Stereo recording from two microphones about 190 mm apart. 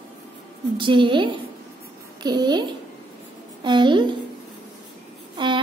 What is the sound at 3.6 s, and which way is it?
Speech, 25° right (ahead or behind).